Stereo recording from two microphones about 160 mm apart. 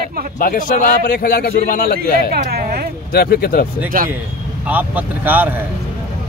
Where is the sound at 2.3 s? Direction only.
70° right (ahead or behind).